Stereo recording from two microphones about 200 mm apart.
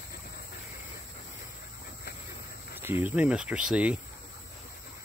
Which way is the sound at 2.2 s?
10° right (ahead or behind).